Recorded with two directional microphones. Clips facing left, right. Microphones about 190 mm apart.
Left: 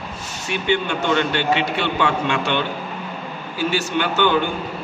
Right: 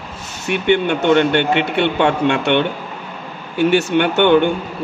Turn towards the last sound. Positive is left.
turn(degrees=-60)  # may be behind; listen again after turning